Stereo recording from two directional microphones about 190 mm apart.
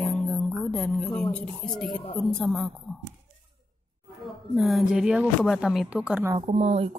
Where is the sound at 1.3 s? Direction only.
5° left (ahead or behind).